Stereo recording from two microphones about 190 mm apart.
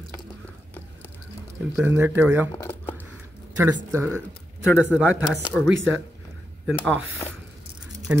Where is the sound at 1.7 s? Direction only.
10° right (ahead or behind).